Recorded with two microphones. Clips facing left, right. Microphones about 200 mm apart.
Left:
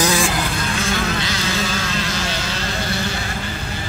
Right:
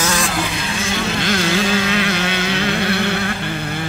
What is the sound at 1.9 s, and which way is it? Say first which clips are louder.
Vehicle: right 5 dB; 60° right (ahead or behind).